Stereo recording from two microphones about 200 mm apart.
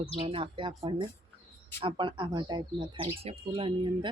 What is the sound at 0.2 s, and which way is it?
Speech, 30° right (ahead or behind).